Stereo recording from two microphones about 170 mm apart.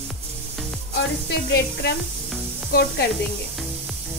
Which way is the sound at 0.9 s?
85° left.